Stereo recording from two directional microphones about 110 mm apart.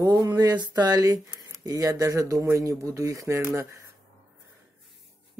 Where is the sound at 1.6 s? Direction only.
35° right (ahead or behind).